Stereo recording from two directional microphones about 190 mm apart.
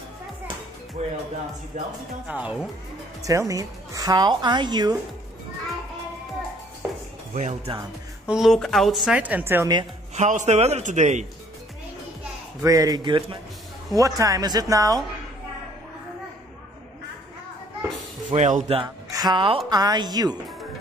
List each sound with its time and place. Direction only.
1.0 s a man's voice: 35° right (ahead or behind)
2.2 s speech: 5° right (ahead or behind)
3.2 s a woman's voice: 15° right (ahead or behind)
7.3 s a man's voice: 40° right (ahead or behind)
8.3 s a woman's voice: centre (ahead or behind)
10.1 s a man's voice: 40° right (ahead or behind)
12.6 s a woman's voice: 20° right (ahead or behind)
18.3 s a man's voice: 40° right (ahead or behind)
19.0 s a woman's voice: 20° right (ahead or behind)